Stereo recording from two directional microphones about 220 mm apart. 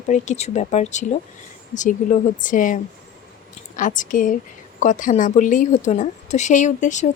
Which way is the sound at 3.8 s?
35° left (ahead or behind).